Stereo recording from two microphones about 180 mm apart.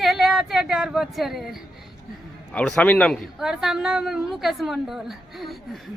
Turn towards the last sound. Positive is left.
turn(degrees=0)  # may be behind; listen again after turning